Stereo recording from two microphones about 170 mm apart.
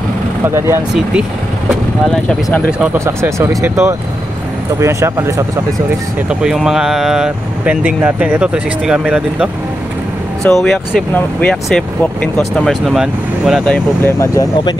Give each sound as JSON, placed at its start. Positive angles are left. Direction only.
{"t": 0.6, "sound": "speech", "side_deg": -15}
{"t": 2.0, "sound": "speech", "side_deg": 5}
{"t": 2.8, "sound": "speech", "side_deg": -15}
{"t": 6.4, "sound": "speech", "side_deg": -5}
{"t": 13.7, "sound": "speech", "side_deg": 15}